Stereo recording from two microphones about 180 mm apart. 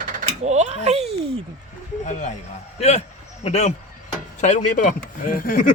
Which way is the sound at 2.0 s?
45° left (ahead or behind).